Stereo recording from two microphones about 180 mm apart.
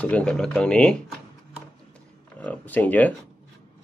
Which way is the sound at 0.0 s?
5° left (ahead or behind).